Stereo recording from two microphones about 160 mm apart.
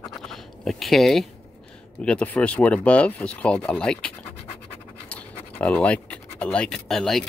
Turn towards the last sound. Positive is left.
turn(degrees=0)  # may be behind; listen again after turning